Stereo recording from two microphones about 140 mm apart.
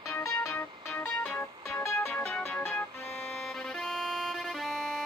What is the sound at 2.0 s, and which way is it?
Music, 5° left (ahead or behind).